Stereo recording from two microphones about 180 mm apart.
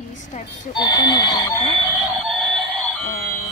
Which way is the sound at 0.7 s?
25° left (ahead or behind).